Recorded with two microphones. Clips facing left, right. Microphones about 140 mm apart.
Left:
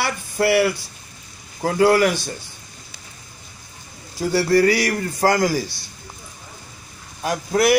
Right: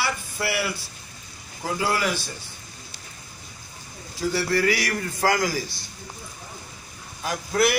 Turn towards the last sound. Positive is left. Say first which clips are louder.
# left 3 dB
turn(degrees=40)  # may be behind; listen again after turning